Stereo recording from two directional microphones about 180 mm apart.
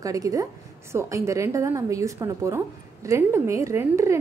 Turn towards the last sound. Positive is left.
turn(degrees=-15)  # may be behind; listen again after turning